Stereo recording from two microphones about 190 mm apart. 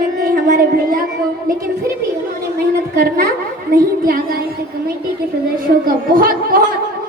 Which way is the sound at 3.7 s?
50° right (ahead or behind).